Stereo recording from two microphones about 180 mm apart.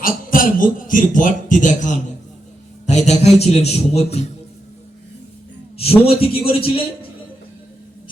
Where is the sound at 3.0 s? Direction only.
35° left (ahead or behind).